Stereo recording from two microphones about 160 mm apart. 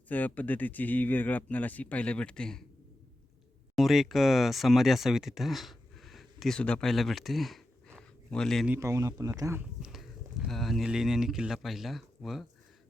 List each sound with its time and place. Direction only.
0.1 s speech: 10° left (ahead or behind)
3.8 s speech: centre (ahead or behind)
8.7 s speech: 20° right (ahead or behind)
9.8 s speech: centre (ahead or behind)